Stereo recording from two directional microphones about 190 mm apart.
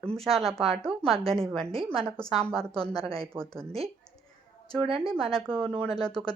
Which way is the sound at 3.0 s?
30° right (ahead or behind).